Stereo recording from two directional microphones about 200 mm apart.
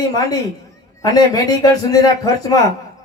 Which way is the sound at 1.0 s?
20° left (ahead or behind).